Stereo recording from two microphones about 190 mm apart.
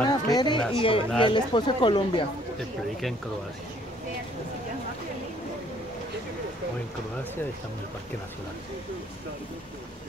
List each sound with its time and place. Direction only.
0.0 s speech: 20° left (ahead or behind)